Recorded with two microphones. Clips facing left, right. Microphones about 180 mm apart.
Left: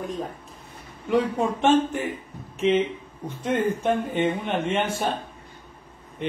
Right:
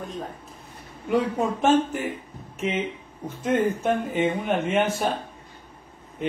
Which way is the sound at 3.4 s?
5° right (ahead or behind).